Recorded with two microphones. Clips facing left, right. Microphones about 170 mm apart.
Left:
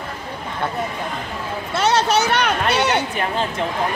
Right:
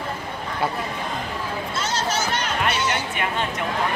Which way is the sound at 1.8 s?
65° left (ahead or behind).